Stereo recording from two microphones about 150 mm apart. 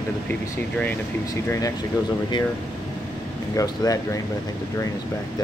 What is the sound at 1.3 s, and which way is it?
Speech, 20° left (ahead or behind).